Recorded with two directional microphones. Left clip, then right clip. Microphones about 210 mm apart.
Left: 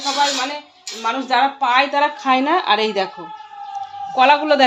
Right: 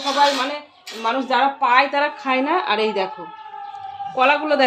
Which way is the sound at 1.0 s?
10° left (ahead or behind).